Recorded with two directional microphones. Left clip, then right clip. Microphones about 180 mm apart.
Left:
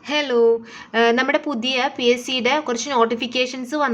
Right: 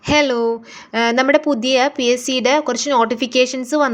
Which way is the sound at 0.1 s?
30° right (ahead or behind).